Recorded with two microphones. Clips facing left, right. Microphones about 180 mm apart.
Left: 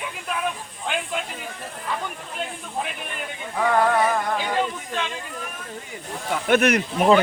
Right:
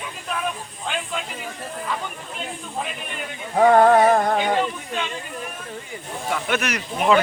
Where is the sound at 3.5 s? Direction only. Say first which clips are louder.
Right 6 dB; 45° right (ahead or behind).